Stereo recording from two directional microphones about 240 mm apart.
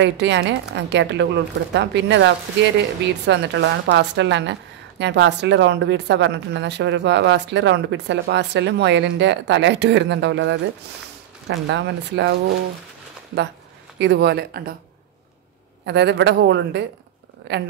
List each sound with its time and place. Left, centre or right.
0.0 s speech: right
13.9 s speech: right
15.8 s speech: right